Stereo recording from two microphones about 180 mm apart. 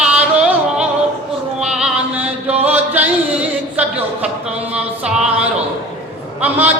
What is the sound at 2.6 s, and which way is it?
Music, 10° right (ahead or behind).